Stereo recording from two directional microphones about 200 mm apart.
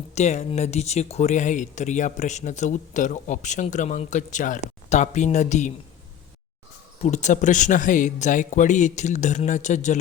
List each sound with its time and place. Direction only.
0.1 s speech: 35° left (ahead or behind)
7.0 s speech: 35° left (ahead or behind)